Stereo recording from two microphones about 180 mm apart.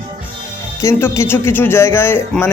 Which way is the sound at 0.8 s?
15° left (ahead or behind).